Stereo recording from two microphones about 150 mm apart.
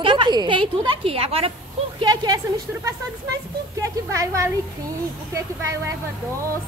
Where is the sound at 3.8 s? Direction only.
20° right (ahead or behind).